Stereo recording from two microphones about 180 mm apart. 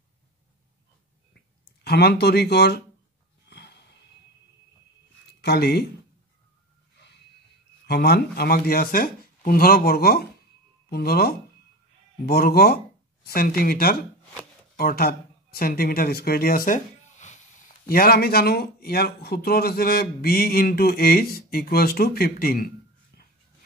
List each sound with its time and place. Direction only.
1.9 s speech: 65° left (ahead or behind)
3.4 s snort: 65° left (ahead or behind)
5.4 s speech: 65° left (ahead or behind)
7.8 s speech: 65° left (ahead or behind); by 17.4 s 45° left (ahead or behind)
17.8 s speech: 55° left (ahead or behind)
23.1 s dog: 60° left (ahead or behind)